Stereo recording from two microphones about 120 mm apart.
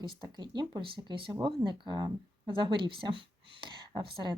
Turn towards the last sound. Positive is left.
turn(degrees=-40)  # may be behind; listen again after turning